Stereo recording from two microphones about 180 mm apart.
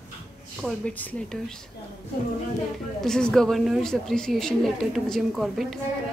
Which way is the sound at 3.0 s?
5° left (ahead or behind).